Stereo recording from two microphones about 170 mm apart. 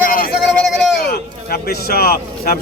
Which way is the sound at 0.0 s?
55° left (ahead or behind).